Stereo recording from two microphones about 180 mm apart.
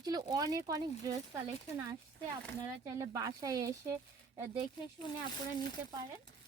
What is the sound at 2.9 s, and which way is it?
Speech, 20° right (ahead or behind).